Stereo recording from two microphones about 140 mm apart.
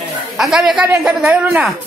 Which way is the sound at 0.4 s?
Centre (ahead or behind).